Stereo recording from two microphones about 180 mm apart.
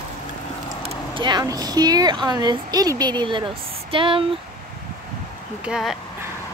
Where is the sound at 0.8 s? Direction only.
25° right (ahead or behind).